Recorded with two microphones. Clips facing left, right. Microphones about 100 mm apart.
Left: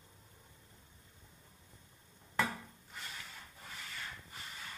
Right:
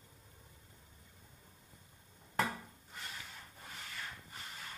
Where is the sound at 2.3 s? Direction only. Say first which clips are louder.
Even; 45° right (ahead or behind).